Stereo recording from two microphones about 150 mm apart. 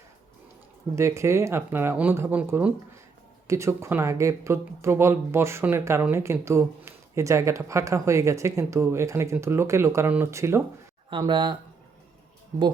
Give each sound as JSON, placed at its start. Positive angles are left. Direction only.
{"t": 0.9, "sound": "speech", "side_deg": -20}
{"t": 11.1, "sound": "speech", "side_deg": -30}